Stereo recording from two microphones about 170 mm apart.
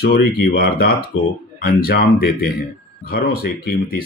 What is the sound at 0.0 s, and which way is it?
Speech, 65° left (ahead or behind).